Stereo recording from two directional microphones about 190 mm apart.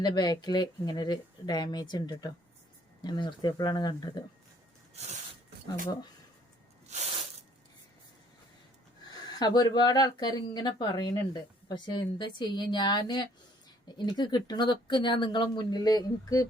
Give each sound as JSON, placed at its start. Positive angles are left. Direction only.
{"t": 0.0, "sound": "speech", "side_deg": 20}
{"t": 6.9, "sound": "a sound", "side_deg": -35}
{"t": 9.4, "sound": "speech", "side_deg": 20}